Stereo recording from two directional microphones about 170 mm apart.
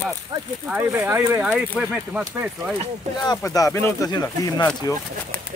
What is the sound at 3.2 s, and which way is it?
Speech, 20° left (ahead or behind).